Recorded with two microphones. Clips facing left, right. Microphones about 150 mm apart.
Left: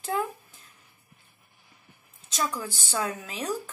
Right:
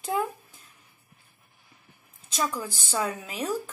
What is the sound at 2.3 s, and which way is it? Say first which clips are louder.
Speech: right 1 dB; 5° right (ahead or behind).